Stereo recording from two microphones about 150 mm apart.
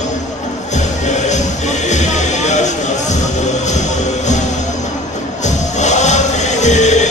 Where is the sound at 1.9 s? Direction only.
50° left (ahead or behind).